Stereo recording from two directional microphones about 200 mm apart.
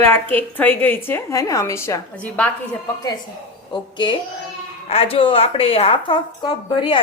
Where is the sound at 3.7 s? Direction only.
25° left (ahead or behind).